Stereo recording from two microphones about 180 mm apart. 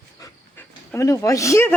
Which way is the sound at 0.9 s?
15° left (ahead or behind).